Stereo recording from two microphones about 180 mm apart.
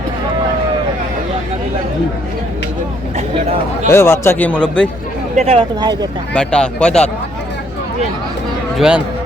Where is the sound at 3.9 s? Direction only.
15° left (ahead or behind).